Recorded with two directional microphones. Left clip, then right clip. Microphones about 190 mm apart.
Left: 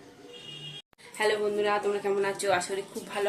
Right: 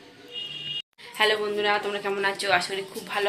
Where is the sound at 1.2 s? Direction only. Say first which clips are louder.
Right 3 dB; centre (ahead or behind).